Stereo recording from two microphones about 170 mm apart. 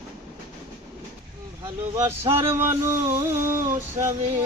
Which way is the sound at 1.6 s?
20° right (ahead or behind).